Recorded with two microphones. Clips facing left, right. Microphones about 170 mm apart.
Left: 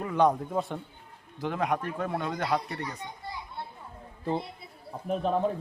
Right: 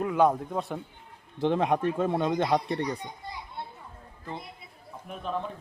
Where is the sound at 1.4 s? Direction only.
25° right (ahead or behind).